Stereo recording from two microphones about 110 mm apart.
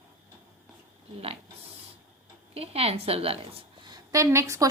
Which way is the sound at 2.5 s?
65° right (ahead or behind).